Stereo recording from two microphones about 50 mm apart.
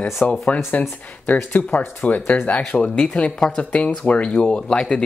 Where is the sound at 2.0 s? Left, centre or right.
Left.